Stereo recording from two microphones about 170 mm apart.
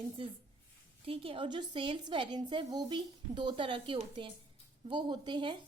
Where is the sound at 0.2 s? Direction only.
30° right (ahead or behind).